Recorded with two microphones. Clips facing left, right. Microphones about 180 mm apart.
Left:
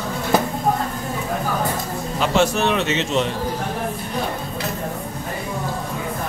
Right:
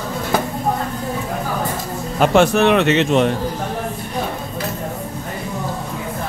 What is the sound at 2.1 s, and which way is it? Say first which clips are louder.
Speech: right 5 dB; 55° right (ahead or behind).